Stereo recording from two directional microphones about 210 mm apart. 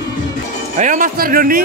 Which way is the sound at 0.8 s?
40° right (ahead or behind).